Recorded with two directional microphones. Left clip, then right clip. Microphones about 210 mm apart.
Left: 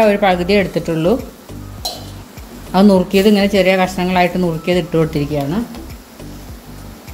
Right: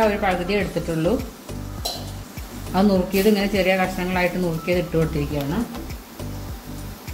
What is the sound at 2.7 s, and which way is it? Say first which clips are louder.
A woman's voice: left 8 dB; 55° left (ahead or behind).